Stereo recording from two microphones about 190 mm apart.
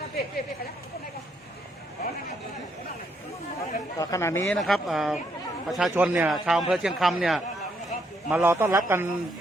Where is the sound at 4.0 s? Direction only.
15° left (ahead or behind).